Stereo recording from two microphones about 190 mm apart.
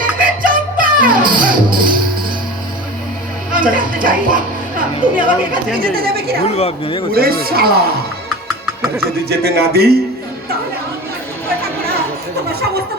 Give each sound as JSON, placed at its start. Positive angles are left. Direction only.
{"t": 0.2, "sound": "music", "side_deg": -45}
{"t": 3.5, "sound": "a woman's voice", "side_deg": -45}
{"t": 6.6, "sound": "a man's voice", "side_deg": 30}
{"t": 7.1, "sound": "a woman's voice", "side_deg": -50}
{"t": 9.3, "sound": "music", "side_deg": -55}